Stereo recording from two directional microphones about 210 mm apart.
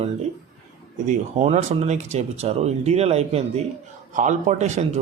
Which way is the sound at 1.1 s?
35° right (ahead or behind).